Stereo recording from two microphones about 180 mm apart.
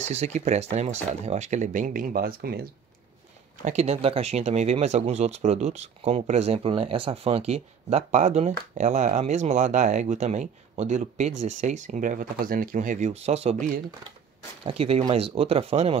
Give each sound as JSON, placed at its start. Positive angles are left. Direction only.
{"t": 0.0, "sound": "speech", "side_deg": -40}
{"t": 3.6, "sound": "speech", "side_deg": -35}